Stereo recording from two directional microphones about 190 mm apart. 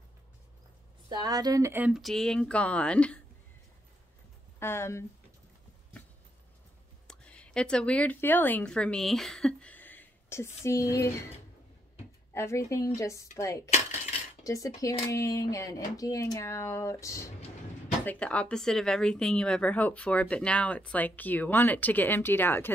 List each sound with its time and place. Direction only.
1.0 s speech: 20° right (ahead or behind); by 3.2 s 5° left (ahead or behind)
4.6 s speech: 15° left (ahead or behind)
7.1 s a woman's voice: 5° left (ahead or behind)
12.4 s a woman's voice: 15° left (ahead or behind)
14.4 s cutlery: 15° left (ahead or behind)
14.8 s a woman's voice: 15° left (ahead or behind)